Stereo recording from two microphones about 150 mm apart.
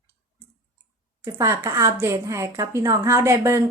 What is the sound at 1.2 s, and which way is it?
A woman's voice, 20° right (ahead or behind).